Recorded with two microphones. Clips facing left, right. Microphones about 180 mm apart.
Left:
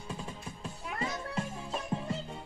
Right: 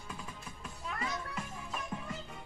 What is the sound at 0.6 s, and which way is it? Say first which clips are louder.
Music: left 3 dB; 30° left (ahead or behind).